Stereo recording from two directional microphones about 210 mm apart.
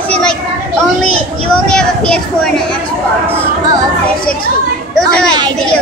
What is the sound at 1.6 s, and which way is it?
Speech, 5° left (ahead or behind).